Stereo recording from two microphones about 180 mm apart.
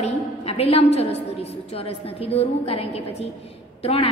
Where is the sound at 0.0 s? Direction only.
35° left (ahead or behind).